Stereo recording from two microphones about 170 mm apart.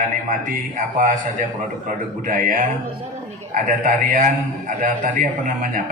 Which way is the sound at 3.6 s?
55° right (ahead or behind).